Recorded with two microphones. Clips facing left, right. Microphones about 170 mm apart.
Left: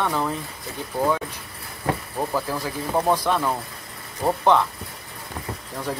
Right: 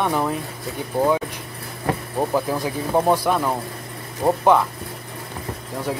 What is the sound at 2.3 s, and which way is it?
Speech, 15° right (ahead or behind).